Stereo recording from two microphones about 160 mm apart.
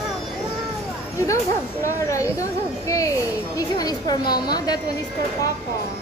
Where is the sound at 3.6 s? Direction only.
25° left (ahead or behind).